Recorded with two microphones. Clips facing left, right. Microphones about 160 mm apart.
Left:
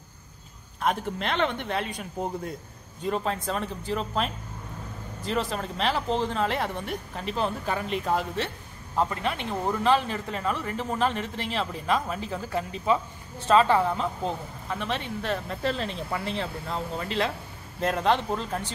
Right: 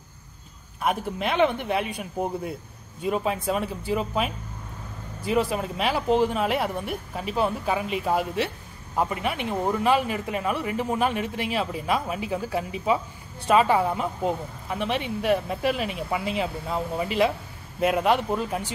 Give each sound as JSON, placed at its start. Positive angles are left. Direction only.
{"t": 0.7, "sound": "speech", "side_deg": -5}